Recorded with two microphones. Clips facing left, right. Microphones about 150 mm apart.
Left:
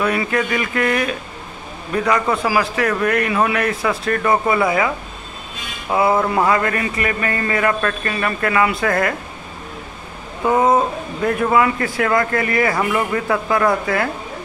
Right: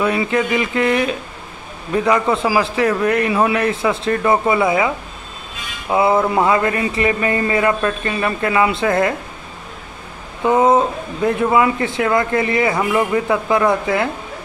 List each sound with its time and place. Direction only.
0.0 s a man's voice: 20° right (ahead or behind)
2.3 s a man's voice: 25° right (ahead or behind)
5.9 s a sound: 20° right (ahead or behind)
6.2 s a man's voice: 20° right (ahead or behind)
10.4 s a man's voice: 15° right (ahead or behind)